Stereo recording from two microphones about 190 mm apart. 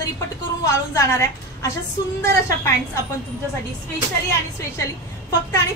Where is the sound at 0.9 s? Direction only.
15° left (ahead or behind).